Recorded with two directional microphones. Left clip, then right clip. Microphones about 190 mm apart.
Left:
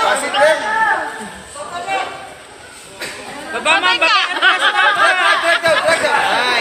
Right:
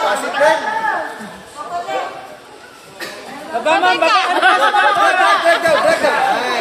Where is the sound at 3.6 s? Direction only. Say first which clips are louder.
Even; 35° right (ahead or behind).